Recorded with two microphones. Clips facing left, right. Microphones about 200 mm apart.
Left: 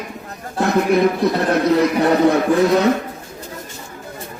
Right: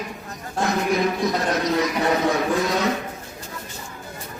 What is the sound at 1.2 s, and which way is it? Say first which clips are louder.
Speech: left 6 dB; 60° left (ahead or behind).